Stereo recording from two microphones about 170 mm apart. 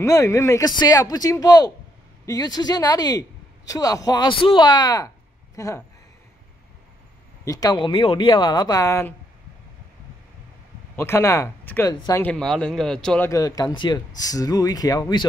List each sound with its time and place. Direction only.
0.0 s speech: 20° left (ahead or behind)
7.4 s speech: 20° left (ahead or behind)
11.0 s speech: 15° left (ahead or behind)
12.3 s speech: 5° left (ahead or behind)
13.3 s speech: 20° left (ahead or behind)